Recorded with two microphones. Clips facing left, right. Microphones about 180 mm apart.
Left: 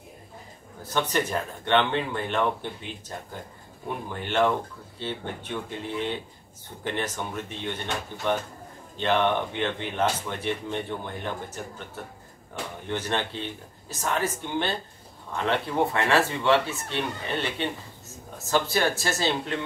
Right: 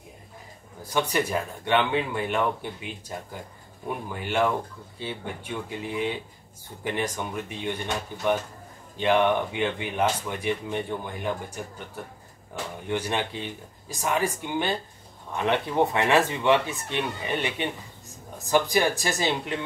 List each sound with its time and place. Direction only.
0.8 s speech: 10° right (ahead or behind)
12.8 s speech: 10° right (ahead or behind)